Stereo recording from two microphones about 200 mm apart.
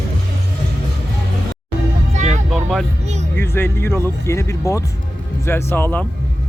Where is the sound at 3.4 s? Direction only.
10° left (ahead or behind).